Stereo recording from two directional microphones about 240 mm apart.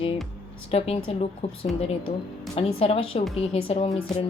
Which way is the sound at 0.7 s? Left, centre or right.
Left.